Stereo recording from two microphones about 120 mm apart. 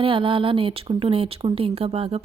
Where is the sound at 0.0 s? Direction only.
45° right (ahead or behind).